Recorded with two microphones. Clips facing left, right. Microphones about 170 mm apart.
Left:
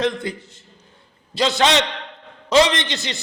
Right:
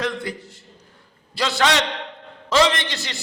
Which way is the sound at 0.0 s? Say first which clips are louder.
Left 4 dB; 20° left (ahead or behind).